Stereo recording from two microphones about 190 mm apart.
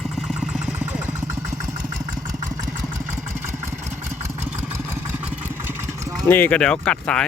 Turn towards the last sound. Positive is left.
turn(degrees=5)  # may be behind; listen again after turning